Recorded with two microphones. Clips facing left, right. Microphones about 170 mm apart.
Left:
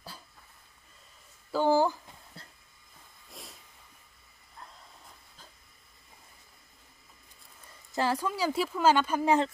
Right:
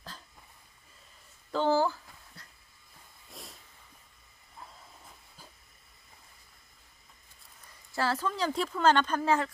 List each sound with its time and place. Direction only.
1.5 s a sound: 10° left (ahead or behind)
2.4 s train: 30° left (ahead or behind)
3.3 s hiss: centre (ahead or behind)
4.6 s hiss: 5° right (ahead or behind)
7.9 s speech: 15° left (ahead or behind)